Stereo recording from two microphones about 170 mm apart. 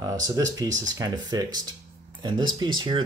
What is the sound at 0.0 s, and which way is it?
Speech, 20° right (ahead or behind).